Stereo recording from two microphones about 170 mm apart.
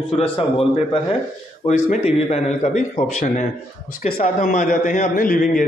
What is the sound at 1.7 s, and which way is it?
A man's voice, 40° left (ahead or behind).